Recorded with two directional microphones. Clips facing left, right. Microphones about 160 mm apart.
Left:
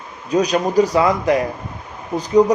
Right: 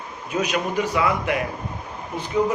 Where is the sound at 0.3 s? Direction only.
35° left (ahead or behind).